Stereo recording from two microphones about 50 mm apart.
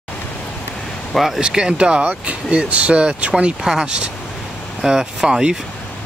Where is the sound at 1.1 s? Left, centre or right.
Centre.